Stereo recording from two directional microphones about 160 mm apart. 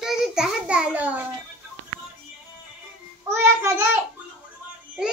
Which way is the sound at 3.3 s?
15° right (ahead or behind).